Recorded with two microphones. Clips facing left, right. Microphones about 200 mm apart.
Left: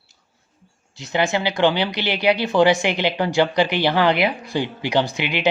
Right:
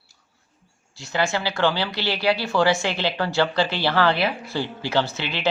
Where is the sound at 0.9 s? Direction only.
20° left (ahead or behind).